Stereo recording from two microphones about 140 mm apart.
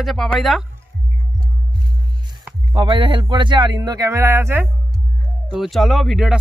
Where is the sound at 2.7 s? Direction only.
35° right (ahead or behind); by 4.6 s 20° right (ahead or behind).